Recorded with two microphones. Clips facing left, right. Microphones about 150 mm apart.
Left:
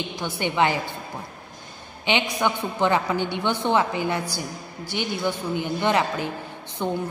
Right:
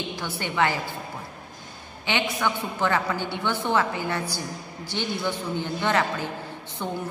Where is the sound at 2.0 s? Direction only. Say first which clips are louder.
Left 3 dB; 20° left (ahead or behind).